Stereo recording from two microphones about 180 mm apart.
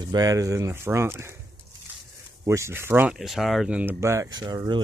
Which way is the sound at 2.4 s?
15° right (ahead or behind).